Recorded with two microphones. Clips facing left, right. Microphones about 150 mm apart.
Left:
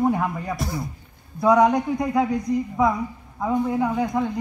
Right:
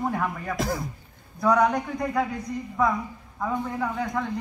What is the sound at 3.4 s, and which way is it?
Speech, 10° left (ahead or behind).